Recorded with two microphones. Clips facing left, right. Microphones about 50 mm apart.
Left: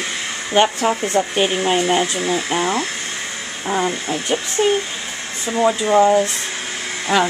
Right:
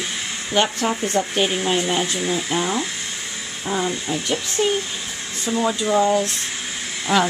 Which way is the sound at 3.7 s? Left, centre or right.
Left.